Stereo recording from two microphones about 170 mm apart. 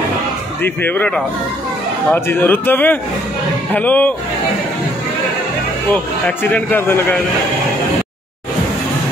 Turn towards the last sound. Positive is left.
turn(degrees=10)  # may be behind; listen again after turning